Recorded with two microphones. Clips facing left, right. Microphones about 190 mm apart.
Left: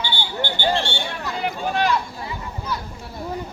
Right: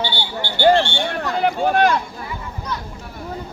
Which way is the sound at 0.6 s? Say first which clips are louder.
Right 10 dB; 55° right (ahead or behind).